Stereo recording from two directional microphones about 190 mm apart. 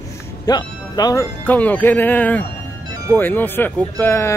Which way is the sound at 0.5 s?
20° left (ahead or behind).